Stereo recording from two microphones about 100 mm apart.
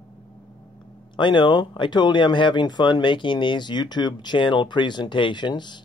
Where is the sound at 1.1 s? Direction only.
55° left (ahead or behind).